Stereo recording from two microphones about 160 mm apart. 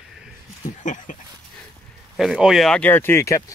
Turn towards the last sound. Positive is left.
turn(degrees=20)  # may be behind; listen again after turning